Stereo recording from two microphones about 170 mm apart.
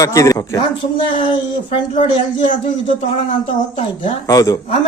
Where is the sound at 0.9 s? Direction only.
30° left (ahead or behind).